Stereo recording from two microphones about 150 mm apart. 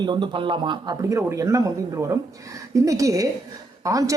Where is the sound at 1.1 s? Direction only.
20° right (ahead or behind).